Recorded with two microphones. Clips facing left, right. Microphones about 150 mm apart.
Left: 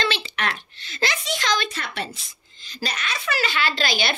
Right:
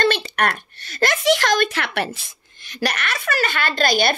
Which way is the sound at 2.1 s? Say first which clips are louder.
Right 2 dB; 70° right (ahead or behind).